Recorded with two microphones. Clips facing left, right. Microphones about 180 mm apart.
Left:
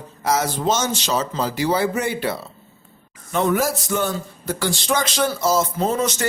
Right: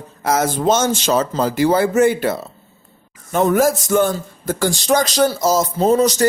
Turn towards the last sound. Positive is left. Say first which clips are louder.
# right 7 dB
turn(degrees=-35)  # may be behind; listen again after turning